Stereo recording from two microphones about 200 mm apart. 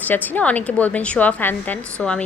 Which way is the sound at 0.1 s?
10° left (ahead or behind).